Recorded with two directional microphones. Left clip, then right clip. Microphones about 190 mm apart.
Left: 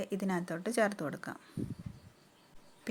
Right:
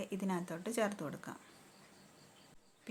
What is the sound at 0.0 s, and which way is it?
Speech, 25° left (ahead or behind).